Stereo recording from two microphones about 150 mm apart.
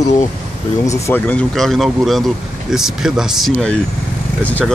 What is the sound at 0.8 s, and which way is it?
Speech, 15° left (ahead or behind).